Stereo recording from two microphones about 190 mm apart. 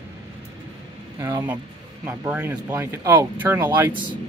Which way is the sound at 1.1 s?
15° right (ahead or behind).